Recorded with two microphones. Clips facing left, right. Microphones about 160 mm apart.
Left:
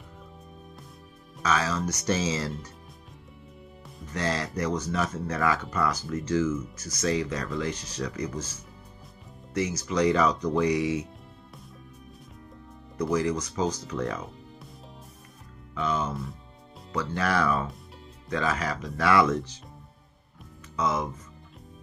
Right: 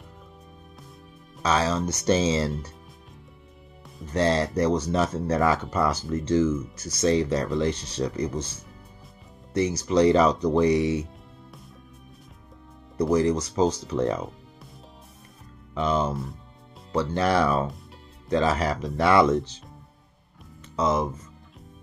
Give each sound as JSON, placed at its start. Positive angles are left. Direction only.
{"t": 1.4, "sound": "speech", "side_deg": -30}
{"t": 4.1, "sound": "speech", "side_deg": -30}
{"t": 9.5, "sound": "speech", "side_deg": -30}
{"t": 12.9, "sound": "speech", "side_deg": -35}
{"t": 15.7, "sound": "speech", "side_deg": -30}
{"t": 20.7, "sound": "speech", "side_deg": -30}